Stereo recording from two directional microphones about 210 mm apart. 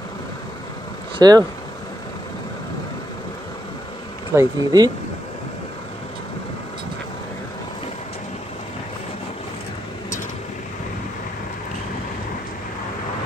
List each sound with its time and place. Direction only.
1.1 s vehicle: 20° right (ahead or behind)
4.4 s speech: 15° right (ahead or behind)